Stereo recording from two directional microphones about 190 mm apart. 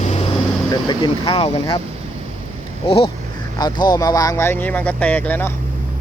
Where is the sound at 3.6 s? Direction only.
20° left (ahead or behind).